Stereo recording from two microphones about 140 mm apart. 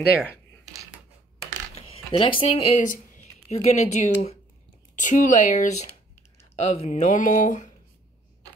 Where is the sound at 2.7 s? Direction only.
55° left (ahead or behind).